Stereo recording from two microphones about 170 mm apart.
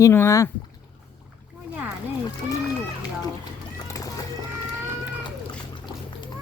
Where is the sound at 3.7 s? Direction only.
20° left (ahead or behind).